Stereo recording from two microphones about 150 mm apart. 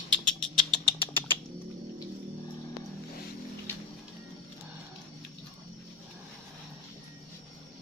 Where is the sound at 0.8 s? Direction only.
35° left (ahead or behind).